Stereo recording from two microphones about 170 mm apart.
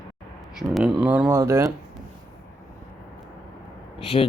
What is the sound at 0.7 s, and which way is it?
Speech, 5° right (ahead or behind).